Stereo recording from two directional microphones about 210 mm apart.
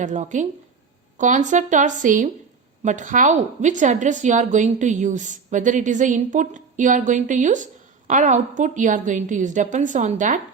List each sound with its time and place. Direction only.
0.0 s a woman's voice: 35° right (ahead or behind)